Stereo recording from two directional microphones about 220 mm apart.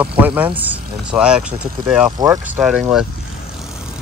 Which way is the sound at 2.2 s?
15° right (ahead or behind).